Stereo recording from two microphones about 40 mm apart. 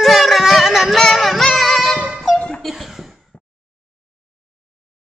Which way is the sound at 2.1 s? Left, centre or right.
Centre.